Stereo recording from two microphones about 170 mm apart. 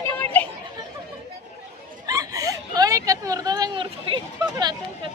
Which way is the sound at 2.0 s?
20° right (ahead or behind).